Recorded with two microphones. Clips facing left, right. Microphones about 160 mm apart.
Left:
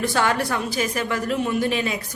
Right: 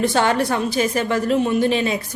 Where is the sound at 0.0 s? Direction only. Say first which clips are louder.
Right 4 dB; 25° right (ahead or behind).